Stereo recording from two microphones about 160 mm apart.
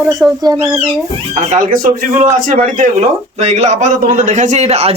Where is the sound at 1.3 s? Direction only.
55° right (ahead or behind).